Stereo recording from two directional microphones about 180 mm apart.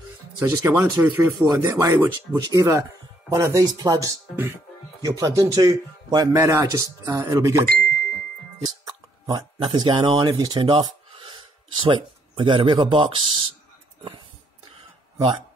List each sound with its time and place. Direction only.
0.4 s speech: 15° right (ahead or behind)
2.3 s a man's voice: 20° right (ahead or behind)
8.6 s hiccup: 20° right (ahead or behind)
9.8 s speech: 25° right (ahead or behind)
15.1 s speech: 20° right (ahead or behind)